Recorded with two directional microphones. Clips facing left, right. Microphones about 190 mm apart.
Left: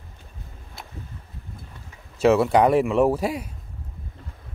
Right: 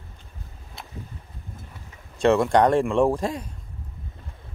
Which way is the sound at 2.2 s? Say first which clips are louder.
Left 1 dB; 5° left (ahead or behind).